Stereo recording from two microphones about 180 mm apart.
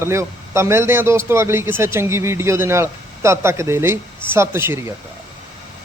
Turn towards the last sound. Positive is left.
turn(degrees=-15)  # may be behind; listen again after turning